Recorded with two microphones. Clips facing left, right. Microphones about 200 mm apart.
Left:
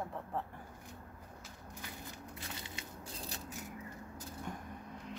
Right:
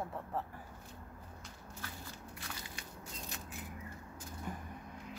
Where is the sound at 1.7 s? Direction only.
15° left (ahead or behind); by 3.5 s 35° left (ahead or behind).